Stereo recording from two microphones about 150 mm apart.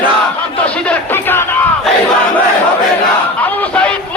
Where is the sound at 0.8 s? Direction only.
15° left (ahead or behind).